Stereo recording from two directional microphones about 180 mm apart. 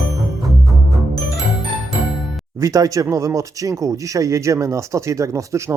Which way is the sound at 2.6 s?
20° right (ahead or behind).